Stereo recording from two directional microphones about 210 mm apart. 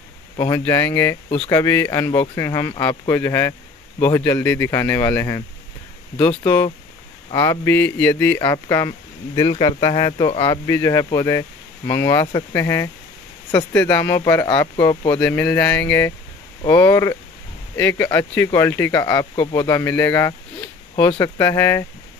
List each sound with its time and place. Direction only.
0.4 s speech: 15° left (ahead or behind)
10.7 s speech: 15° left (ahead or behind)
15.1 s speech: 5° left (ahead or behind)